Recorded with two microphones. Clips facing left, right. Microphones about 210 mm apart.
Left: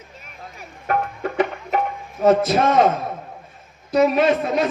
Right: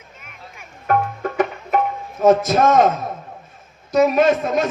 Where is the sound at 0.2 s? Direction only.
35° left (ahead or behind).